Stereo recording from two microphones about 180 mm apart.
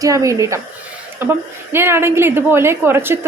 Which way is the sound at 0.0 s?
20° right (ahead or behind).